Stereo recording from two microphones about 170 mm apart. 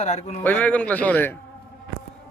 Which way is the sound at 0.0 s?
45° left (ahead or behind).